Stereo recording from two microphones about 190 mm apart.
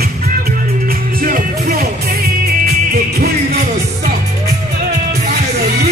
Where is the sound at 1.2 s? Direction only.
50° right (ahead or behind).